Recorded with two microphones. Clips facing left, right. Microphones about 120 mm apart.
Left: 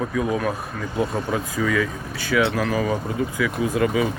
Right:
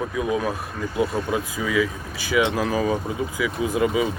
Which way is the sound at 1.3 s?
15° right (ahead or behind).